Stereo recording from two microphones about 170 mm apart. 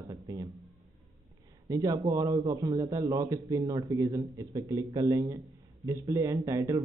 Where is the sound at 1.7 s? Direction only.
20° right (ahead or behind).